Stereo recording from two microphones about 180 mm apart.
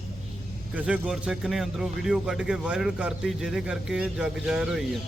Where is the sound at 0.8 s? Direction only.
5° right (ahead or behind).